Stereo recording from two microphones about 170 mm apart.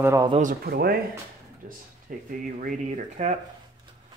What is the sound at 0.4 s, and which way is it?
Speech, 60° right (ahead or behind).